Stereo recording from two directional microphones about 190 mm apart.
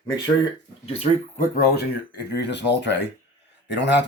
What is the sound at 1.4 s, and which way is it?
Speech, 55° left (ahead or behind).